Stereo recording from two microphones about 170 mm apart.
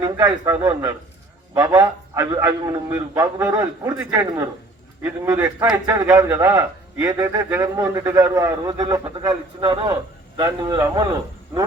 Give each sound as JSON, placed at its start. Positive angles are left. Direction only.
{"t": 0.0, "sound": "a man's voice", "side_deg": -20}